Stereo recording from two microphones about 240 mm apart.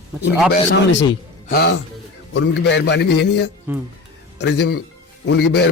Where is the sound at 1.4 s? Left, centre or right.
Left.